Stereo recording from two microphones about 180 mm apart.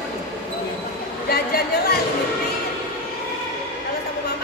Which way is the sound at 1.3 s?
60° left (ahead or behind).